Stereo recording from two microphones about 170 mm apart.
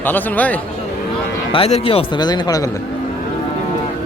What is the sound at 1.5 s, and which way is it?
Speech, 35° left (ahead or behind).